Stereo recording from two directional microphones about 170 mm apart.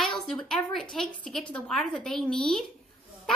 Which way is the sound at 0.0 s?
5° left (ahead or behind).